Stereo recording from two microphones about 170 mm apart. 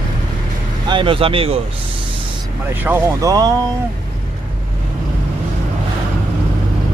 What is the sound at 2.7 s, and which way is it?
Speech, 10° right (ahead or behind).